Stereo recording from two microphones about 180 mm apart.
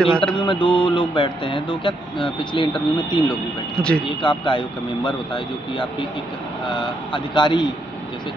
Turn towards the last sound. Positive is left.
turn(degrees=25)  # may be behind; listen again after turning